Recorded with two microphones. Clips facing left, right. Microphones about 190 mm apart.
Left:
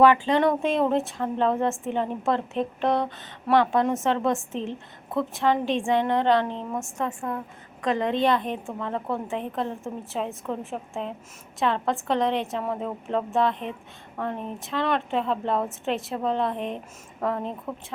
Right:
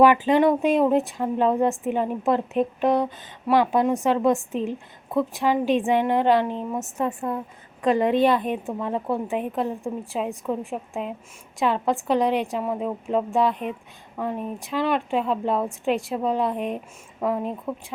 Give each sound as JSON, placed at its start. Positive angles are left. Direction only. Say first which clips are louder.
{"t": 0.0, "sound": "a woman's voice", "louder": "right 2 dB", "side_deg": -15}
{"t": 7.9, "sound": "a woman's voice", "louder": "right 3 dB", "side_deg": -10}